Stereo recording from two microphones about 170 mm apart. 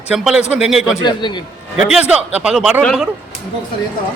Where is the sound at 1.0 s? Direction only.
25° left (ahead or behind).